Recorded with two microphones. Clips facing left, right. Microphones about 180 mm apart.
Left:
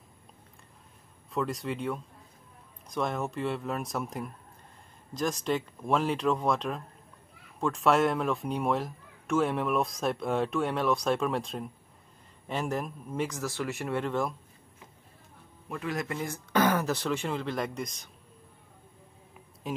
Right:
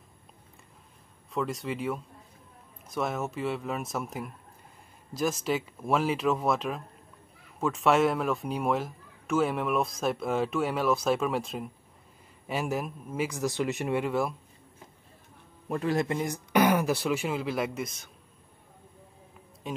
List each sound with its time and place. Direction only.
1.3 s speech: centre (ahead or behind)
13.4 s speech: 20° right (ahead or behind)
15.7 s speech: 35° right (ahead or behind); by 18.1 s 5° right (ahead or behind)
19.6 s speech: centre (ahead or behind)